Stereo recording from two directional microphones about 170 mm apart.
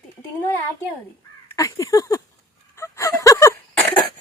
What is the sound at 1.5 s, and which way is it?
Speech, 20° left (ahead or behind).